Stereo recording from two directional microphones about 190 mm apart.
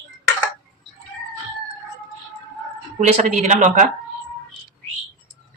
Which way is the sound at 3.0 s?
35° right (ahead or behind).